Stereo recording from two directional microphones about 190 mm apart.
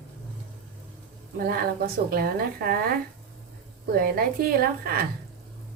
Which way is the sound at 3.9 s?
50° right (ahead or behind).